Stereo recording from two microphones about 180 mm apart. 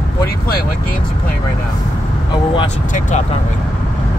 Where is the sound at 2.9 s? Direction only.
40° left (ahead or behind).